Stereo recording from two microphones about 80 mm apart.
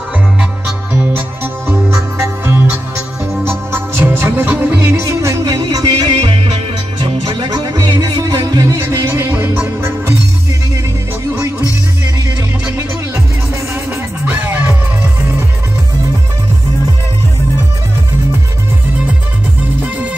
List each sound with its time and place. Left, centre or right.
1.1 s music: right
5.0 s music: right
5.4 s music: right
6.2 s music: right
13.8 s music: right
19.8 s music: centre